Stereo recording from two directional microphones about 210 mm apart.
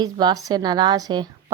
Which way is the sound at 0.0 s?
20° right (ahead or behind).